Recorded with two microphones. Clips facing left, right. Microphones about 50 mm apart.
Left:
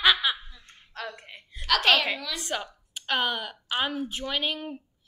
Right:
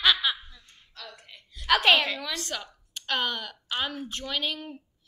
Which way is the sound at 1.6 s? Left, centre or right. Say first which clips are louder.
Right 1 dB; centre.